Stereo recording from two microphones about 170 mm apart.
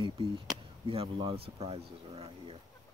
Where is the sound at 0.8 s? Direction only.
35° right (ahead or behind).